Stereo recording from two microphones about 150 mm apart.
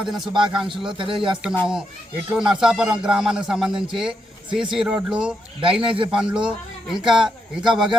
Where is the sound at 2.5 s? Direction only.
5° right (ahead or behind).